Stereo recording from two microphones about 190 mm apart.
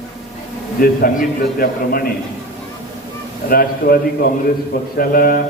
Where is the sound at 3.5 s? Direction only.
50° left (ahead or behind).